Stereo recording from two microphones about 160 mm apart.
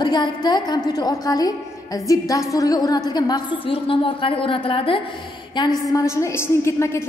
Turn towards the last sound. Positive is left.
turn(degrees=15)  # may be behind; listen again after turning